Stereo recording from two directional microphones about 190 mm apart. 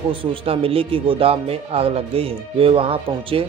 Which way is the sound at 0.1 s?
25° right (ahead or behind).